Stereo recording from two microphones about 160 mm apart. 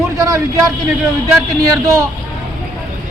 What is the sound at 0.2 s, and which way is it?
A man's voice, 20° right (ahead or behind).